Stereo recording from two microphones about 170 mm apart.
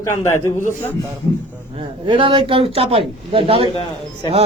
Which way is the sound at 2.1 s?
30° right (ahead or behind).